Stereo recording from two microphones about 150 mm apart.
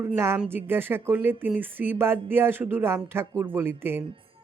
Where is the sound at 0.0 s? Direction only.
15° right (ahead or behind).